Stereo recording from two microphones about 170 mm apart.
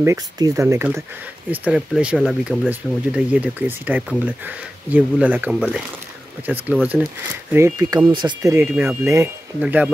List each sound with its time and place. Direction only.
0.0 s speech: 15° right (ahead or behind)
7.5 s speech: 20° right (ahead or behind)